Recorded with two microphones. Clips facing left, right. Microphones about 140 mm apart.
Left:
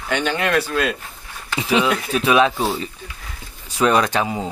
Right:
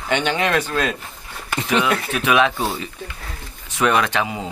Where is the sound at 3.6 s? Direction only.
30° left (ahead or behind).